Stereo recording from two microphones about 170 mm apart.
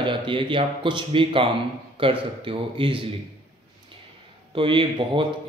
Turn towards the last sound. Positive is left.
turn(degrees=-30)  # may be behind; listen again after turning